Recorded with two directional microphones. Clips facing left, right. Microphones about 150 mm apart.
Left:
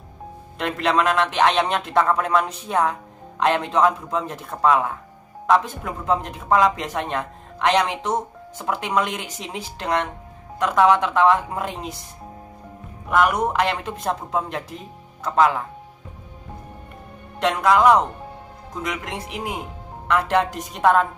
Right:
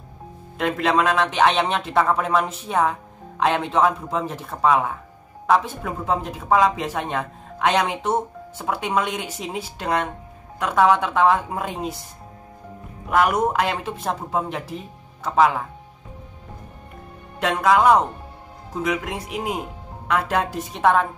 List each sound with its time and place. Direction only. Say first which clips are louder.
0.6 s speech: right 1 dB; centre (ahead or behind)
13.3 s speech: even; 5° right (ahead or behind)
17.6 s speech: even; 5° right (ahead or behind)